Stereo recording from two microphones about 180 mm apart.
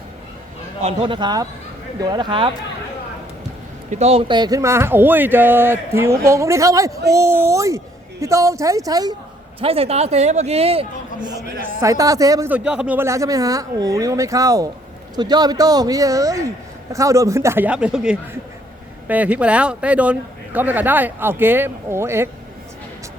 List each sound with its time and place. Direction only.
0.8 s a man's voice: 35° right (ahead or behind)
3.8 s speech: 40° right (ahead or behind); by 9.1 s 20° right (ahead or behind)
9.6 s a man's voice: 35° right (ahead or behind)
11.8 s a man's voice: 20° right (ahead or behind)
12.5 s a man's voice: 5° right (ahead or behind)